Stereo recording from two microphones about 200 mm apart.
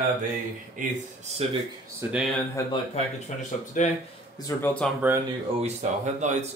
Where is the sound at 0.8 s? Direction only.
40° right (ahead or behind).